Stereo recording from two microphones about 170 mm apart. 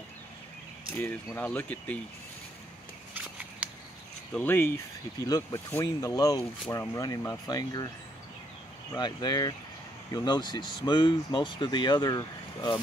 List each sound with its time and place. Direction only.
0.9 s speech: 10° left (ahead or behind)
4.3 s speech: 10° left (ahead or behind)
8.9 s speech: 25° left (ahead or behind)